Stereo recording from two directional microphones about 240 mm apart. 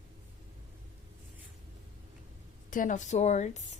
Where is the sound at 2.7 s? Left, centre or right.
Left.